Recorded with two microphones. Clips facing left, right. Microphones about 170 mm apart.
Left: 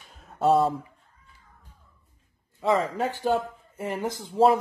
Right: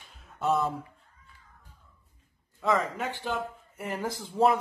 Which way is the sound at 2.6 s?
30° left (ahead or behind).